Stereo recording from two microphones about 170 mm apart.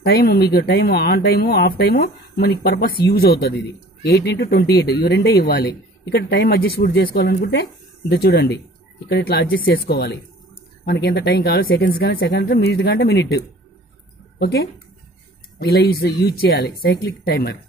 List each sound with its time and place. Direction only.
0.0 s speech: 65° left (ahead or behind)
4.0 s speech: 90° left
8.1 s speech: 65° left (ahead or behind)
14.4 s speech: 65° left (ahead or behind)